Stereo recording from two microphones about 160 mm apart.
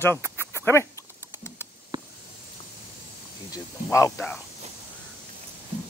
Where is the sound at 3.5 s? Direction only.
20° left (ahead or behind).